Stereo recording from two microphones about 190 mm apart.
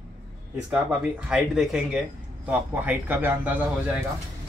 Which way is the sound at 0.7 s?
5° right (ahead or behind).